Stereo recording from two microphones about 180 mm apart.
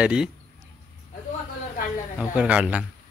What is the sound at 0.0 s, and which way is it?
Speech, 5° right (ahead or behind).